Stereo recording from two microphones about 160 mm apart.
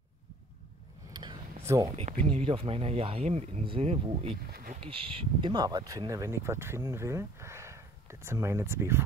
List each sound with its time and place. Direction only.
1.6 s a sound: 15° right (ahead or behind)
2.0 s speech: 40° right (ahead or behind)
4.5 s speech: 70° right (ahead or behind)
4.7 s speech: 35° right (ahead or behind); by 9.0 s 15° right (ahead or behind)